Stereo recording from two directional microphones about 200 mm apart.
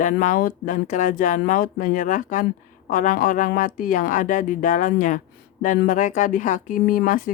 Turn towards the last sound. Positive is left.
turn(degrees=45)  # may be behind; listen again after turning